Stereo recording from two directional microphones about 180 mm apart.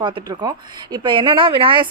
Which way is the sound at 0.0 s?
25° right (ahead or behind).